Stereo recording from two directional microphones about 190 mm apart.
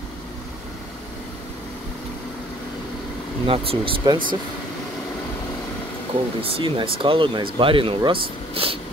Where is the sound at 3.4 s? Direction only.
30° right (ahead or behind).